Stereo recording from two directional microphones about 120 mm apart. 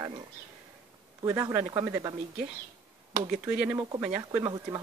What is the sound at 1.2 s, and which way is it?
Speech, 25° right (ahead or behind).